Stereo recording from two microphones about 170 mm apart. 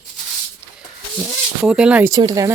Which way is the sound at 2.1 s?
20° right (ahead or behind).